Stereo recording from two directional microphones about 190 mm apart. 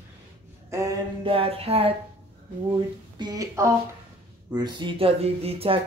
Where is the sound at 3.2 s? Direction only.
20° right (ahead or behind).